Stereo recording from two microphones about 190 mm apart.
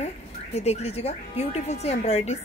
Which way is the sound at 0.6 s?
35° left (ahead or behind).